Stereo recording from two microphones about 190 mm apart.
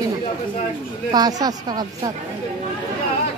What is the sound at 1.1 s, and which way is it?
Speech, 20° right (ahead or behind).